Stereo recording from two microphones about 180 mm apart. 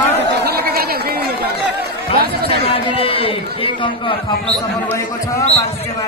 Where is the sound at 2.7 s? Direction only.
30° left (ahead or behind).